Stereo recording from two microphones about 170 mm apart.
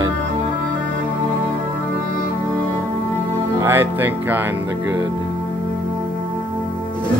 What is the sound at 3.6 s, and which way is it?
Speech, 15° right (ahead or behind).